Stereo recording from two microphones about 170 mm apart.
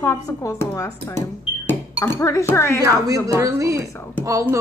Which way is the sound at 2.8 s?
20° right (ahead or behind).